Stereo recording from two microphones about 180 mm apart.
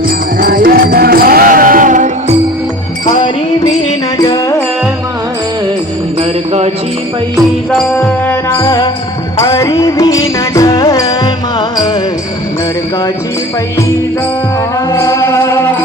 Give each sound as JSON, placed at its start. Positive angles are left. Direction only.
{"t": 0.3, "sound": "music", "side_deg": -50}
{"t": 4.2, "sound": "music", "side_deg": 20}
{"t": 7.7, "sound": "music", "side_deg": 5}
{"t": 14.9, "sound": "music", "side_deg": 15}